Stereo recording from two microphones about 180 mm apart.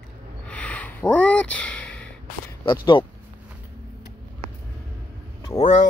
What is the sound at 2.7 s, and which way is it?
Speech, 30° left (ahead or behind).